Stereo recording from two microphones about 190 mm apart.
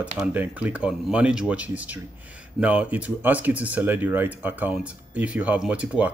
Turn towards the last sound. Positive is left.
turn(degrees=-5)  # may be behind; listen again after turning